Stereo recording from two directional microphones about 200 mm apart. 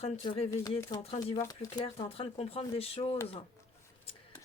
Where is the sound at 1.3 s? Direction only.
15° left (ahead or behind).